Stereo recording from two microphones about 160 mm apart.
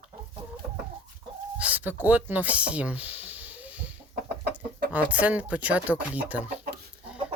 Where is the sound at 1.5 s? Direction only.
10° right (ahead or behind).